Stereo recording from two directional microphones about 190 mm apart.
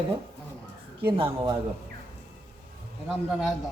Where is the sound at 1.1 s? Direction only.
25° right (ahead or behind).